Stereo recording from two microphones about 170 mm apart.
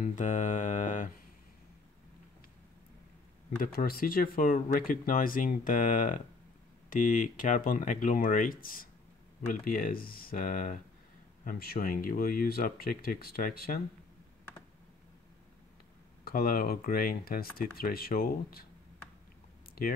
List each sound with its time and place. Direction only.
0.0 s speech: 45° left (ahead or behind)
3.5 s speech: 60° left (ahead or behind)
11.4 s speech: 65° left (ahead or behind)
16.3 s speech: 60° left (ahead or behind)